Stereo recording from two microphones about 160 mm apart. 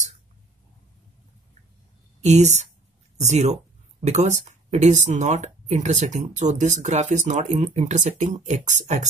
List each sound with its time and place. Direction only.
2.2 s speech: 45° right (ahead or behind)